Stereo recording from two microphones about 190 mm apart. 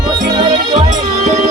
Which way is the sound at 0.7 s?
40° right (ahead or behind).